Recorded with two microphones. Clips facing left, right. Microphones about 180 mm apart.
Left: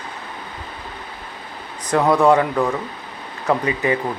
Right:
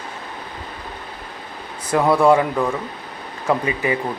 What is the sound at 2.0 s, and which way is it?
Speech, 10° right (ahead or behind).